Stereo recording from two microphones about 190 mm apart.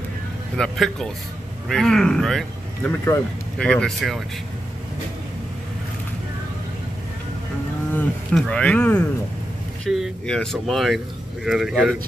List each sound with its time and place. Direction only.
0.6 s speech: centre (ahead or behind)
7.9 s speech: 5° left (ahead or behind)